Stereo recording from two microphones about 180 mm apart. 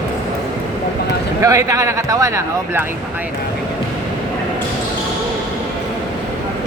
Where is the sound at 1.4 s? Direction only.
15° right (ahead or behind).